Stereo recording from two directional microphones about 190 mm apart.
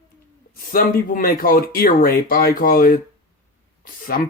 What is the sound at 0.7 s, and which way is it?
Speech, 50° left (ahead or behind).